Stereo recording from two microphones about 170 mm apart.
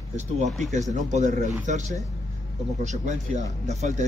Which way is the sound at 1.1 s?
45° right (ahead or behind).